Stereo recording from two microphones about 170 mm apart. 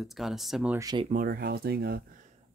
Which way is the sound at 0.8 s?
25° right (ahead or behind).